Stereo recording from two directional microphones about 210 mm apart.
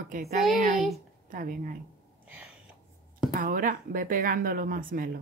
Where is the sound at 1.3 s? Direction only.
40° right (ahead or behind).